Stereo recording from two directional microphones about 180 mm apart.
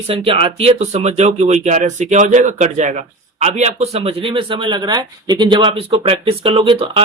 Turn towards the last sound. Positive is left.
turn(degrees=-30)  # may be behind; listen again after turning